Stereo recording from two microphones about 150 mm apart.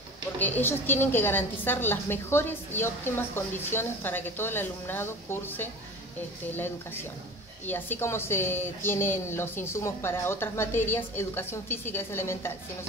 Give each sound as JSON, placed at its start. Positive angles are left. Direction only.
{"t": 0.4, "sound": "a woman's voice", "side_deg": 10}
{"t": 7.6, "sound": "a woman's voice", "side_deg": 15}